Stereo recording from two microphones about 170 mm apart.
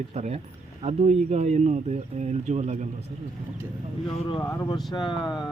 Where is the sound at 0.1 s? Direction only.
40° right (ahead or behind).